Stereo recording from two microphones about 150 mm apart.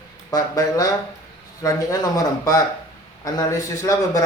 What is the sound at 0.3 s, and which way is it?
Speech, 25° left (ahead or behind).